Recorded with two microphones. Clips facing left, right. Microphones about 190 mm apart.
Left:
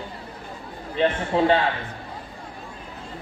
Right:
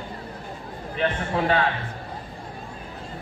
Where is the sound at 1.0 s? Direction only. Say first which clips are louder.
Left 4 dB; 25° left (ahead or behind).